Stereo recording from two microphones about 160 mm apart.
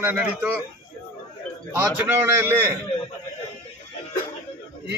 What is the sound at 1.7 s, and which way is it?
Speech, 10° right (ahead or behind).